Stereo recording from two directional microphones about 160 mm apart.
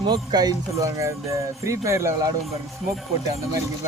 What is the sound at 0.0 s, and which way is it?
Speech, 25° right (ahead or behind).